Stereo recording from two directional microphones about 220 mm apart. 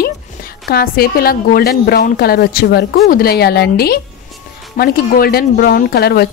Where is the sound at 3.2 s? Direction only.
45° left (ahead or behind).